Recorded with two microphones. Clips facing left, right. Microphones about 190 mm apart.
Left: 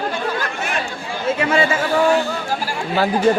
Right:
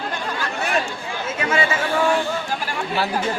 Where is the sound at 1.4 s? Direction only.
35° left (ahead or behind).